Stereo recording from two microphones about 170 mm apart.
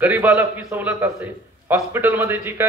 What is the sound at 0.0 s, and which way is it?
A man's voice, 10° right (ahead or behind).